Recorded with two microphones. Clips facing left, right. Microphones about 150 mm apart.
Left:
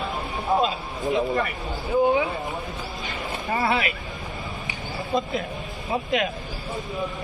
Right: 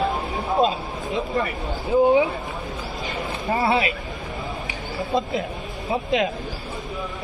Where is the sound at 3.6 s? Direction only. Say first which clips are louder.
Right 3 dB; 20° right (ahead or behind).